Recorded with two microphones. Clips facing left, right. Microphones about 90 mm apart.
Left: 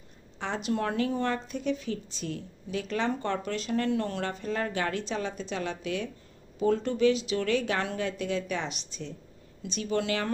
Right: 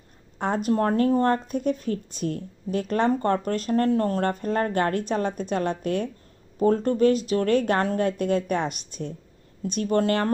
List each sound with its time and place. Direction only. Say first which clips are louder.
0.3 s speech: right 7 dB; 45° right (ahead or behind)